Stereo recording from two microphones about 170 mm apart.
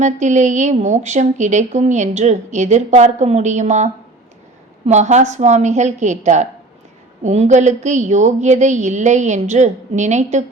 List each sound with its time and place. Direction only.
0.0 s a woman's voice: 45° right (ahead or behind)
4.9 s a woman's voice: 45° right (ahead or behind)